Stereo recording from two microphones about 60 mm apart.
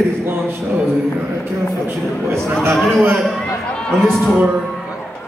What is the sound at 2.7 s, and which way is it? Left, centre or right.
Speech, centre.